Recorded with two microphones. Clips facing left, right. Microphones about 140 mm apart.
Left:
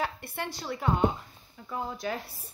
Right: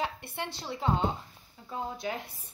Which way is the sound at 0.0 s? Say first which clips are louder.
Left 1 dB; 20° right (ahead or behind).